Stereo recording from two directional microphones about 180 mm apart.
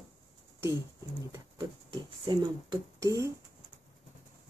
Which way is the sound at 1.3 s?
25° right (ahead or behind).